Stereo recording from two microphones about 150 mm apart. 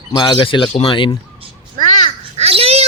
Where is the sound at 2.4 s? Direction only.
40° right (ahead or behind).